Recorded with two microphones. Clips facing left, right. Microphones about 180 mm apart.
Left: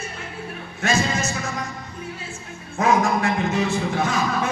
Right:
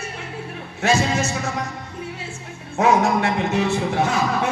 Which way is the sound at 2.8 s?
70° right (ahead or behind).